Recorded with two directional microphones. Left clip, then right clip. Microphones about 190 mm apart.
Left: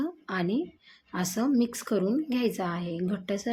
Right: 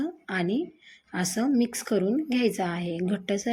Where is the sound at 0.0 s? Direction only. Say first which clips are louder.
Right 2 dB; 5° right (ahead or behind).